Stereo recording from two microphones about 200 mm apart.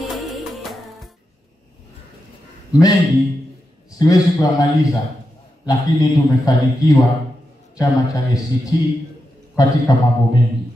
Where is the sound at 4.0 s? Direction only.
20° left (ahead or behind).